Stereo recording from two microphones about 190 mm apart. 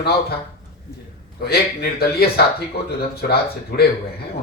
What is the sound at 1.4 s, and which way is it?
Speech, 55° left (ahead or behind).